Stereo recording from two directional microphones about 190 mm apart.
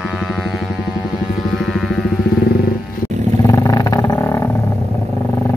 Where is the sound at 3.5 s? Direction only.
15° left (ahead or behind).